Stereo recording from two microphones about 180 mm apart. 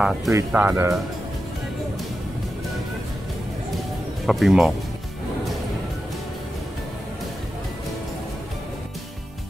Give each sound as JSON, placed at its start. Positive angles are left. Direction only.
{"t": 0.0, "sound": "speech", "side_deg": 0}
{"t": 0.3, "sound": "speech", "side_deg": -10}
{"t": 4.3, "sound": "speech", "side_deg": 0}